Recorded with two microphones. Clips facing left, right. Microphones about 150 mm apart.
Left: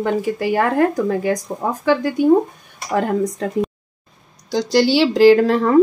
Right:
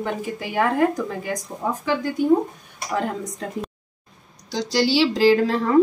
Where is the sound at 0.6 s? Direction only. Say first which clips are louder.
Left 1 dB; 65° left (ahead or behind).